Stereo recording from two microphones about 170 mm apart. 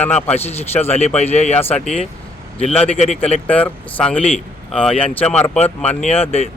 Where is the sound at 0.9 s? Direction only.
40° left (ahead or behind).